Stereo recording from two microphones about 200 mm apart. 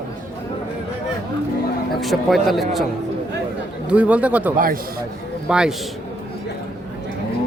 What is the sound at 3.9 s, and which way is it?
Speech, 5° right (ahead or behind).